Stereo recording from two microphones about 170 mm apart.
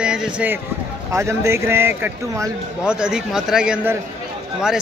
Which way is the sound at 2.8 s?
5° right (ahead or behind).